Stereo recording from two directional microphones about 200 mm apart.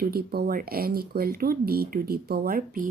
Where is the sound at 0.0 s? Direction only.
50° right (ahead or behind).